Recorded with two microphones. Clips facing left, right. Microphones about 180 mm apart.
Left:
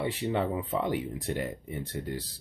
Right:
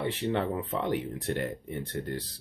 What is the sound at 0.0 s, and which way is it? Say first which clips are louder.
Speech: even; 10° left (ahead or behind).